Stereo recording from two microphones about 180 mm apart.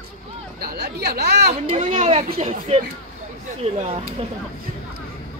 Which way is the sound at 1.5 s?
40° right (ahead or behind).